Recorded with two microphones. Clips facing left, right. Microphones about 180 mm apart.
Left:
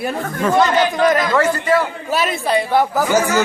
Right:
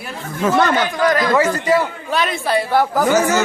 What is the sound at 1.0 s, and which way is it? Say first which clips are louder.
Speech: left 1 dB; 20° left (ahead or behind).